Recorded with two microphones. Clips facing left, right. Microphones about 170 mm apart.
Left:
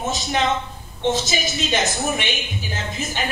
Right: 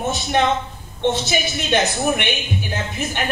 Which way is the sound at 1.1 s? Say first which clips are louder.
Left 2 dB; 60° right (ahead or behind).